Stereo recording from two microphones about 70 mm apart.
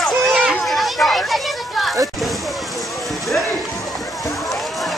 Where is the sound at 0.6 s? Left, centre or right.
Centre.